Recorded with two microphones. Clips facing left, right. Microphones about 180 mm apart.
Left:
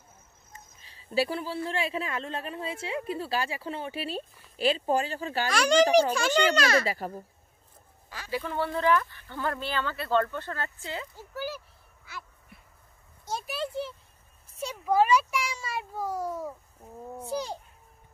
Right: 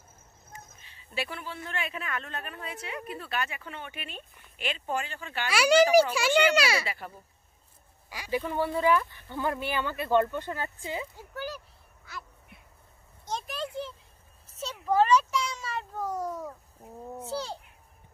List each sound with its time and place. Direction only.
0.8 s a woman's voice: 35° left (ahead or behind)
5.5 s speech: 5° right (ahead or behind)
6.9 s a woman's voice: 40° left (ahead or behind)
8.1 s speech: 15° right (ahead or behind)
11.1 s speech: 5° left (ahead or behind)
13.2 s a sound: 10° left (ahead or behind)
17.2 s a child's voice: 15° left (ahead or behind)